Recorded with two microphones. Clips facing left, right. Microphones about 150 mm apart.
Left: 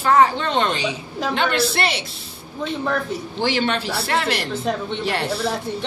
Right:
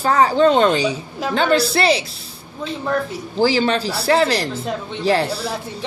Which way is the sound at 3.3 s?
40° right (ahead or behind).